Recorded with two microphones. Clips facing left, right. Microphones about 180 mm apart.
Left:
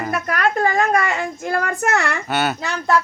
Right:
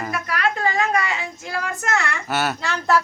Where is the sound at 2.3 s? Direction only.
Centre (ahead or behind).